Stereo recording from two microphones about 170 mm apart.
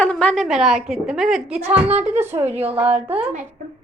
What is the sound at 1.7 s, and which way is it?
Speech, 35° right (ahead or behind).